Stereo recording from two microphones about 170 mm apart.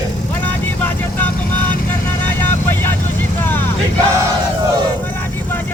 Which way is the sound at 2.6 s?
10° left (ahead or behind).